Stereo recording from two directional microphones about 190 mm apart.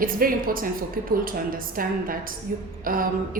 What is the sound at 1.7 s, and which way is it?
A woman's voice, 50° right (ahead or behind).